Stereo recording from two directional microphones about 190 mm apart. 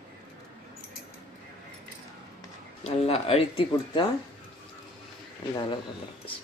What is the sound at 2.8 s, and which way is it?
Speech, 30° left (ahead or behind).